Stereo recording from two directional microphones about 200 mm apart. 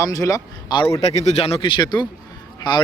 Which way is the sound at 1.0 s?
35° left (ahead or behind).